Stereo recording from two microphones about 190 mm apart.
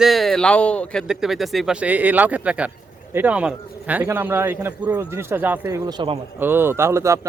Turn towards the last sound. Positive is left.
turn(degrees=-15)  # may be behind; listen again after turning